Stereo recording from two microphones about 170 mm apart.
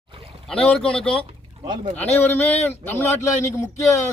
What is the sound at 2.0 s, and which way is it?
A man's voice, 10° left (ahead or behind).